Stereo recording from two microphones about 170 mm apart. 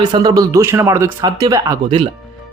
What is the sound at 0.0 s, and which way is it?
Speech, 25° right (ahead or behind).